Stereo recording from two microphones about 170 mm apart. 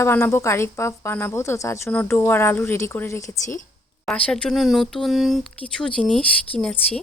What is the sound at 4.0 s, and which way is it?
Speech, 5° left (ahead or behind).